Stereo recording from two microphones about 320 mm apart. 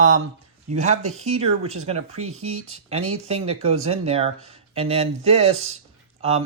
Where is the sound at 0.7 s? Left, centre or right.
Right.